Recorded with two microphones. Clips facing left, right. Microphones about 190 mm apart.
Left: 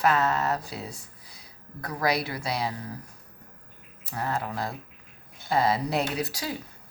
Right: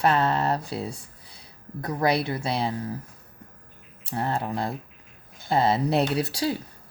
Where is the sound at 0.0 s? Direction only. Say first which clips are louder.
Right 2 dB; 30° right (ahead or behind).